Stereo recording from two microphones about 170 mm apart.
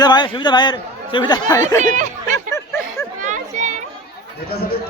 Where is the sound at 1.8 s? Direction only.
45° right (ahead or behind).